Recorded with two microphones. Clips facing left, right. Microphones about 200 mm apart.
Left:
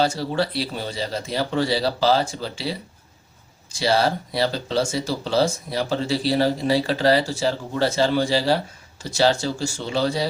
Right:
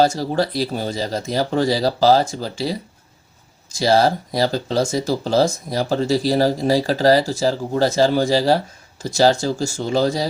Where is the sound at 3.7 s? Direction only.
40° right (ahead or behind).